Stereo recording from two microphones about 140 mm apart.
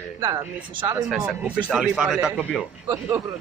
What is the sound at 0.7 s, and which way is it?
Speech, 25° right (ahead or behind).